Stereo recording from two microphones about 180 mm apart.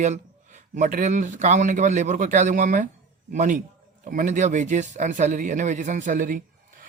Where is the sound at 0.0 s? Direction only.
40° right (ahead or behind).